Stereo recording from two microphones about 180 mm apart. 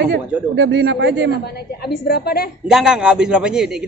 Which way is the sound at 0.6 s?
75° right (ahead or behind).